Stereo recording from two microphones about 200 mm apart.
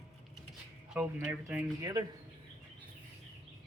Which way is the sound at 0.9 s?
10° right (ahead or behind).